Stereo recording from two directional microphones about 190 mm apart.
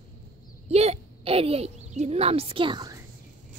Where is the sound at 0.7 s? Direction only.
35° right (ahead or behind).